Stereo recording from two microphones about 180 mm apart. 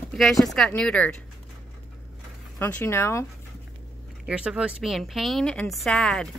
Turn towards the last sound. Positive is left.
turn(degrees=0)  # may be behind; listen again after turning